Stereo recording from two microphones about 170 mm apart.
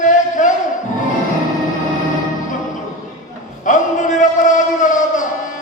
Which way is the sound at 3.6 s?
45° left (ahead or behind).